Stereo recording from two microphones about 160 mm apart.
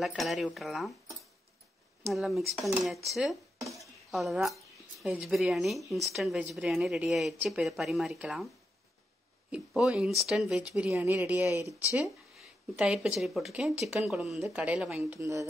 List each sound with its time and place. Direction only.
0.0 s speech: centre (ahead or behind)
2.1 s speech: centre (ahead or behind)
9.5 s speech: 5° right (ahead or behind)
10.9 s speech: 15° right (ahead or behind)
11.5 s speech: 20° left (ahead or behind)
12.1 s speech: 5° right (ahead or behind)
15.0 s speech: 20° right (ahead or behind)